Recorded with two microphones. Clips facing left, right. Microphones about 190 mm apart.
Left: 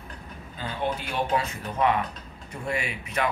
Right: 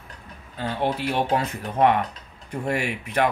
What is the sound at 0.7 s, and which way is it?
Speech, 70° right (ahead or behind).